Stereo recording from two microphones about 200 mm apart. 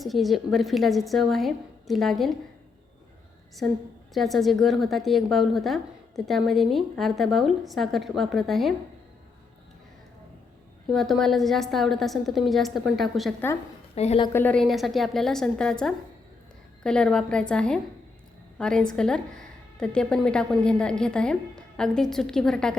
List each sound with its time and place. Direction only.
0.0 s a woman's voice: centre (ahead or behind)
4.1 s a woman's voice: centre (ahead or behind)
10.9 s a woman's voice: centre (ahead or behind)
13.9 s a woman's voice: 30° left (ahead or behind)
14.3 s a woman's voice: 5° left (ahead or behind)